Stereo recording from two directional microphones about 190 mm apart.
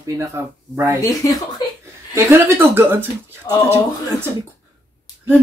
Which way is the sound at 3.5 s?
20° left (ahead or behind).